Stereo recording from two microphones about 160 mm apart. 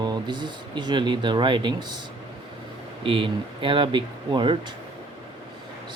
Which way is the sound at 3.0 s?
35° right (ahead or behind).